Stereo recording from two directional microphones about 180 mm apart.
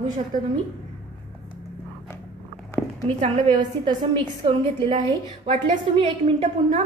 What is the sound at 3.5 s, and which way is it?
A woman's voice, 25° right (ahead or behind).